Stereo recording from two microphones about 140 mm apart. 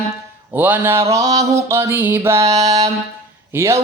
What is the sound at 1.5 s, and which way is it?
Speech, 20° right (ahead or behind).